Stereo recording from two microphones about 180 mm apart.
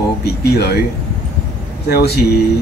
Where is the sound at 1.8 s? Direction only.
65° left (ahead or behind).